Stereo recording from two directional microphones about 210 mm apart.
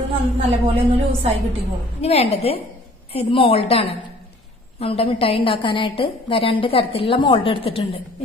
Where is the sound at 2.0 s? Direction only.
30° left (ahead or behind).